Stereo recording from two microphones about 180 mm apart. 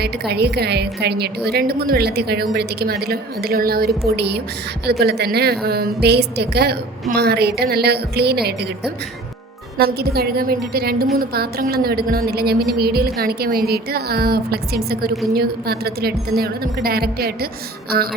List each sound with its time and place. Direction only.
0.0 s a woman's voice: 65° right (ahead or behind)